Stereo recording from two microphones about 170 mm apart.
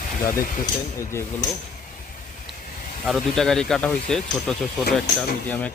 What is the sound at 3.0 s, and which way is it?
Speech, centre (ahead or behind).